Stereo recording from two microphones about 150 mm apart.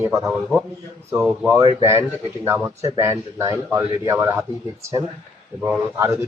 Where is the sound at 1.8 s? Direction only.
15° right (ahead or behind).